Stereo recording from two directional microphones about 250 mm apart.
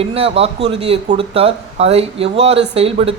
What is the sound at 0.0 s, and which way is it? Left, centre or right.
Speech, right.